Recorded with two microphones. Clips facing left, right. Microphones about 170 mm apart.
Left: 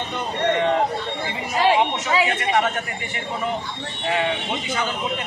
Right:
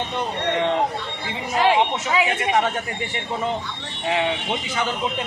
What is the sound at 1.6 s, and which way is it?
Speech, 5° right (ahead or behind).